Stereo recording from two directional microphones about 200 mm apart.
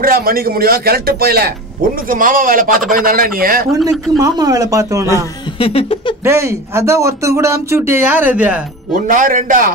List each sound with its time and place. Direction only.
0.0 s speech: 45° right (ahead or behind)
4.2 s speech: 20° right (ahead or behind)
5.6 s a sound: 30° left (ahead or behind)
6.2 s speech: 15° right (ahead or behind)
8.9 s speech: 40° right (ahead or behind)